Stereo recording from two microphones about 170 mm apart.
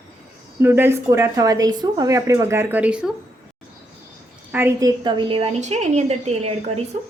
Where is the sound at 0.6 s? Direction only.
15° right (ahead or behind).